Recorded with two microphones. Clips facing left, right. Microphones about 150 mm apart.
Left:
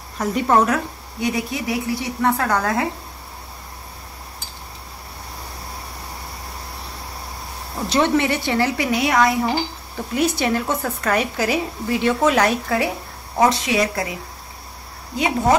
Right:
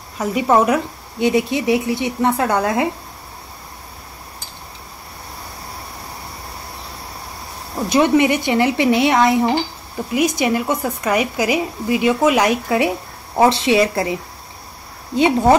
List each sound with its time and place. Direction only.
0.2 s a woman's voice: 10° right (ahead or behind)
1.2 s speech: 25° right (ahead or behind)
7.9 s speech: 15° right (ahead or behind)
10.1 s a woman's voice: 15° right (ahead or behind)
15.1 s speech: 30° right (ahead or behind)